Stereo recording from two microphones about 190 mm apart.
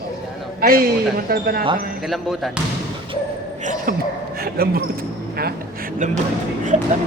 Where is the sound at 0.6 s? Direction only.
50° right (ahead or behind).